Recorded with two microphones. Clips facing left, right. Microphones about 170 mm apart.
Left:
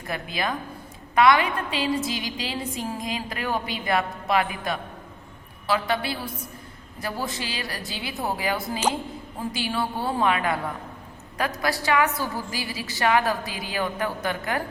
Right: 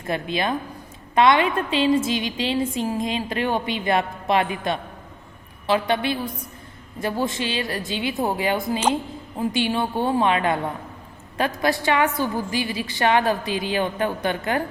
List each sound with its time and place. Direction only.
0.1 s a woman's voice: 25° right (ahead or behind)
5.9 s a woman's voice: 20° right (ahead or behind)
11.6 s a woman's voice: 25° right (ahead or behind)